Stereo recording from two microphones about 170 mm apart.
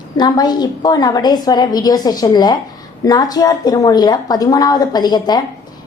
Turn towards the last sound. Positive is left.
turn(degrees=25)  # may be behind; listen again after turning